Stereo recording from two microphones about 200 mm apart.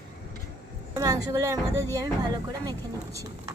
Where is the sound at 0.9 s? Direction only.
20° right (ahead or behind).